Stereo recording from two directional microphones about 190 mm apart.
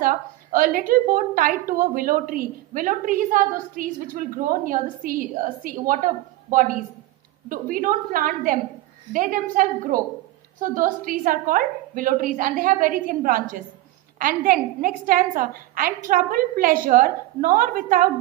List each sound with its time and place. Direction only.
0.0 s a woman's voice: 45° right (ahead or behind)